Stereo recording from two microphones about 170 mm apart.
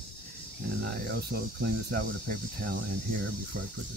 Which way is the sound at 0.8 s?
75° right (ahead or behind).